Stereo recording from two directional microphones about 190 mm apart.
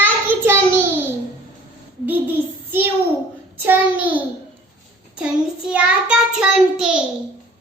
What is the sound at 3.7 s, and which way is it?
Child singing, 10° right (ahead or behind).